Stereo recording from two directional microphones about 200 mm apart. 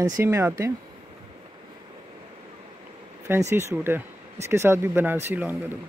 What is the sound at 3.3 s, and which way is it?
Speech, 15° right (ahead or behind).